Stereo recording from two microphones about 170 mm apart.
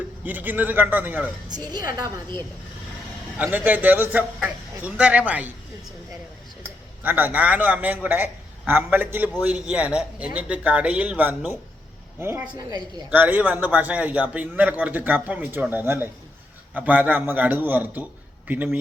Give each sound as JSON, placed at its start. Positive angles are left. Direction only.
{"t": 0.3, "sound": "a man's voice", "side_deg": -10}
{"t": 1.5, "sound": "a woman's voice", "side_deg": -25}
{"t": 3.3, "sound": "a man's voice", "side_deg": -10}
{"t": 6.6, "sound": "a man's voice", "side_deg": -10}
{"t": 13.1, "sound": "a man's voice", "side_deg": -10}